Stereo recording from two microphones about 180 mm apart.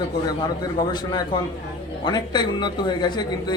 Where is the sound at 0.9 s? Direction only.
25° left (ahead or behind).